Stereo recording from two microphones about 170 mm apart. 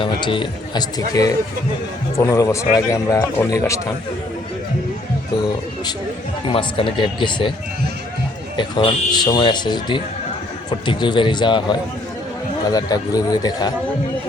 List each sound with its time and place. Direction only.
0.0 s a man's voice: 30° left (ahead or behind)
6.5 s a man's voice: 30° left (ahead or behind)
8.5 s a man's voice: 25° left (ahead or behind)